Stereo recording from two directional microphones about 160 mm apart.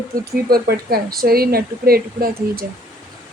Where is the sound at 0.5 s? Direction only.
70° right (ahead or behind).